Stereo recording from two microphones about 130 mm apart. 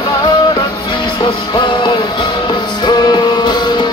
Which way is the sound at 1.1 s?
35° left (ahead or behind).